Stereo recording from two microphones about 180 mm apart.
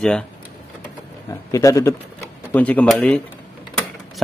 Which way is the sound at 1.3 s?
20° left (ahead or behind).